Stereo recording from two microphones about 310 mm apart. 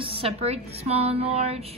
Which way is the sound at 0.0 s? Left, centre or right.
Centre.